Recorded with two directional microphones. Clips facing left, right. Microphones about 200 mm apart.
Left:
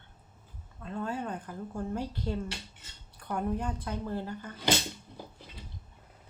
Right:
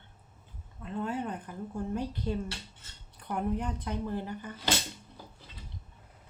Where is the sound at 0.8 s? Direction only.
20° right (ahead or behind).